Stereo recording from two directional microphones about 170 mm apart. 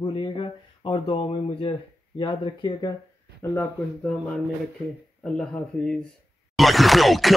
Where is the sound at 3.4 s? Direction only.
10° left (ahead or behind).